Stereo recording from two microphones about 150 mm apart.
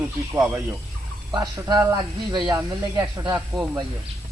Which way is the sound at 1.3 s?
25° right (ahead or behind).